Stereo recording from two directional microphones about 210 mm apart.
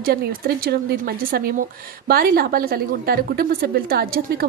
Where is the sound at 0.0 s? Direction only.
50° right (ahead or behind).